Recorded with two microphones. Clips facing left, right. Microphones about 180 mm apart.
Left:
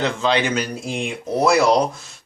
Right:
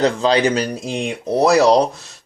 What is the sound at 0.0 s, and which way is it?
Speech, 40° right (ahead or behind).